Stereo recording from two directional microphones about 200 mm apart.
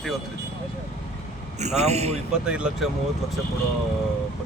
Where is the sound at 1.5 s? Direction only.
35° right (ahead or behind).